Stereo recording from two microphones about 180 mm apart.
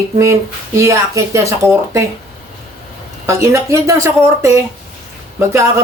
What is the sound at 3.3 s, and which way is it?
Speech, 15° right (ahead or behind).